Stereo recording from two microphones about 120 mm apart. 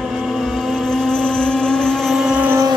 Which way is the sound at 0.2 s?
5° left (ahead or behind).